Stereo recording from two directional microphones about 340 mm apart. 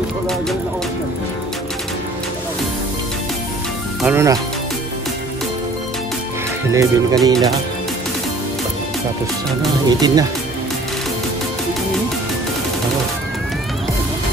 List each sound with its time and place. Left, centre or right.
4.0 s speech: centre
6.7 s speech: centre
9.8 s speech: centre